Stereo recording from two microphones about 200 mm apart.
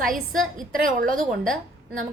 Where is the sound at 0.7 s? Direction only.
45° right (ahead or behind).